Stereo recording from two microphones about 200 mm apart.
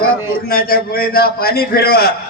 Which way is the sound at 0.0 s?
50° left (ahead or behind).